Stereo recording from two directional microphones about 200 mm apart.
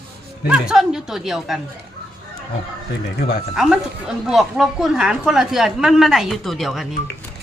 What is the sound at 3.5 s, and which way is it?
A woman's voice, 5° right (ahead or behind).